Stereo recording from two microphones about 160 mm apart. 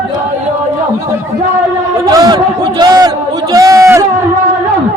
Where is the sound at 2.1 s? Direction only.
25° right (ahead or behind).